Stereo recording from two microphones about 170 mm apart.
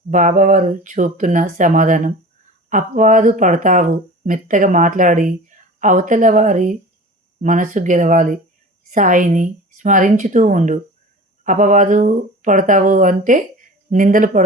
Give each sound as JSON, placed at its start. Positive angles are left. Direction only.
{"t": 0.1, "sound": "speech", "side_deg": -50}